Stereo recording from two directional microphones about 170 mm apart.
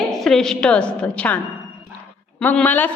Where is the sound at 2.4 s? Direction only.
10° left (ahead or behind).